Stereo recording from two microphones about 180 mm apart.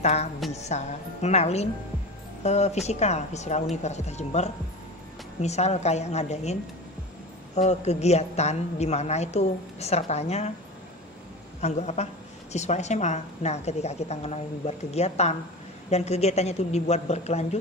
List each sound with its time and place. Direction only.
0.0 s a woman's voice: 35° left (ahead or behind)
11.6 s a woman's voice: 40° left (ahead or behind)